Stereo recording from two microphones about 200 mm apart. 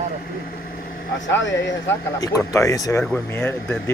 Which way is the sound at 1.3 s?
65° left (ahead or behind).